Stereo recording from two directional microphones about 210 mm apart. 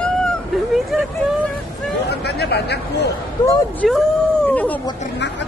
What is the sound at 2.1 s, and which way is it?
Speech, 50° left (ahead or behind).